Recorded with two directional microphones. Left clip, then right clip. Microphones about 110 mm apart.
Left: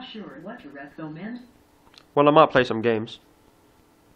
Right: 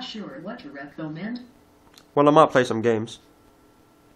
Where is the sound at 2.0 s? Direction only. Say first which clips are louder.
Even; 20° left (ahead or behind).